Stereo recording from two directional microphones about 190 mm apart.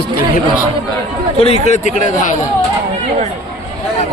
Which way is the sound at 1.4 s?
35° left (ahead or behind).